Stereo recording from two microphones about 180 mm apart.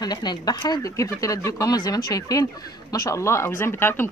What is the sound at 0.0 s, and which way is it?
Speech, 25° left (ahead or behind).